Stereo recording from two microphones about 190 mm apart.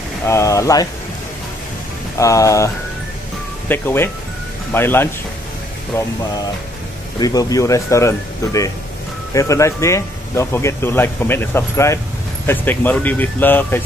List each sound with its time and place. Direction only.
0.3 s speech: 15° left (ahead or behind)
2.1 s speech: 15° left (ahead or behind)
7.2 s speech: 20° left (ahead or behind)